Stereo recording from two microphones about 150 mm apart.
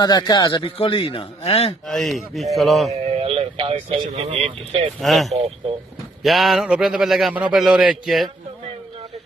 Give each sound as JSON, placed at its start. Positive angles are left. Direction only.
{"t": 0.0, "sound": "a man's voice", "side_deg": 30}
{"t": 1.9, "sound": "a man's voice", "side_deg": 0}
{"t": 2.9, "sound": "speech", "side_deg": -40}
{"t": 5.0, "sound": "a man's voice", "side_deg": 0}